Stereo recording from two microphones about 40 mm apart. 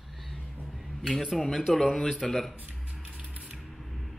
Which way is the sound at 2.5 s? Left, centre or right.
Right.